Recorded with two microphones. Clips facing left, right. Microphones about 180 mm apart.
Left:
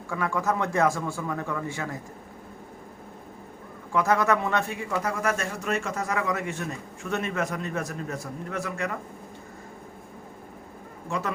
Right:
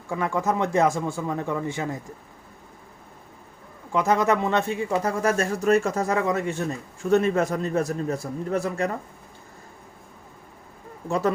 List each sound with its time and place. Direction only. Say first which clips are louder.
0.1 s speech: right 2 dB; 20° right (ahead or behind)
3.9 s speech: right 2 dB; 20° right (ahead or behind)
11.1 s speech: right 7 dB; 35° right (ahead or behind)